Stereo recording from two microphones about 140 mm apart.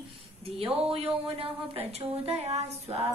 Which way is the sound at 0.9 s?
40° right (ahead or behind).